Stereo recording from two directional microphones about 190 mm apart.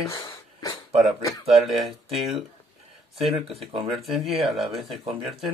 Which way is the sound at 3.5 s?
30° right (ahead or behind).